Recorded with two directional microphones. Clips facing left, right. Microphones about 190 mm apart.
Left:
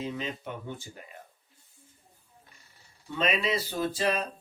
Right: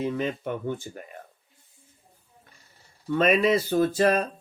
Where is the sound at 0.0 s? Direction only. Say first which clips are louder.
Right 7 dB; 55° right (ahead or behind).